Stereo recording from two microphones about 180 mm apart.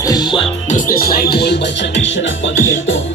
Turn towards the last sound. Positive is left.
turn(degrees=90)